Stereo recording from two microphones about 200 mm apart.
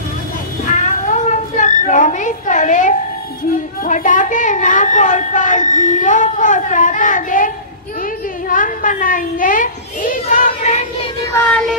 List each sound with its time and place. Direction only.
0.7 s a sound: 40° left (ahead or behind)
3.5 s a woman's voice: 40° left (ahead or behind)
11.3 s child singing: 5° left (ahead or behind)